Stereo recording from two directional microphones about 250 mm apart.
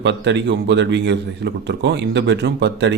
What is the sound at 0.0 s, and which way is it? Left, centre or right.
A man's voice, right.